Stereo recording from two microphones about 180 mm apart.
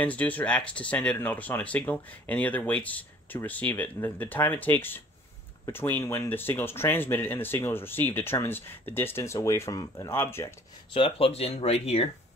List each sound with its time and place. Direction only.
0.0 s speech: 10° left (ahead or behind)
10.9 s speech: 30° left (ahead or behind)